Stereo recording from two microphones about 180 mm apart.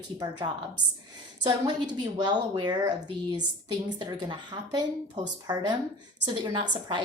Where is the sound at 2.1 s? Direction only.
25° right (ahead or behind).